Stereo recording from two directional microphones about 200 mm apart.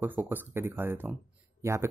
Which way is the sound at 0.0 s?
10° right (ahead or behind).